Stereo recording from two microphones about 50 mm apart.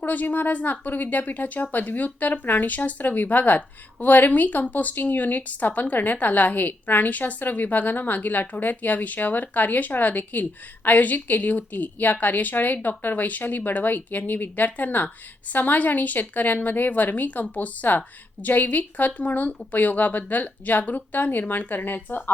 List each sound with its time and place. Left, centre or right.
0.0 s speech: left